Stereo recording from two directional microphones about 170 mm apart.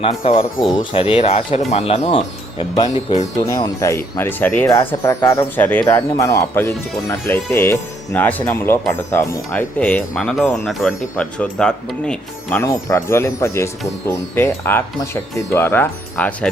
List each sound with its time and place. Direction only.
0.2 s speech: 30° left (ahead or behind); by 12.6 s 5° left (ahead or behind)
12.6 s speech: 15° left (ahead or behind)